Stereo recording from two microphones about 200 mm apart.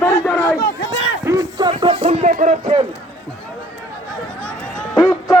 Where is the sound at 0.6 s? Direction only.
60° left (ahead or behind).